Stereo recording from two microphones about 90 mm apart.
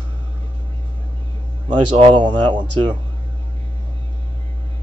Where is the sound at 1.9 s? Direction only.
75° right (ahead or behind); by 3.0 s 55° right (ahead or behind).